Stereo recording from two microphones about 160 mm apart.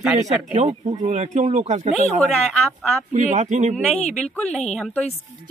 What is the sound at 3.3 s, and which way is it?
Speech, 45° right (ahead or behind).